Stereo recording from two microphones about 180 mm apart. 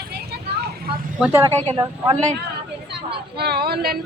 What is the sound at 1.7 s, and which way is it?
Speech, 25° right (ahead or behind).